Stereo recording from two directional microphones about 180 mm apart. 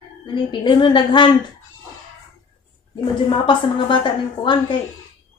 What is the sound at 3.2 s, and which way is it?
A woman's voice, 30° left (ahead or behind).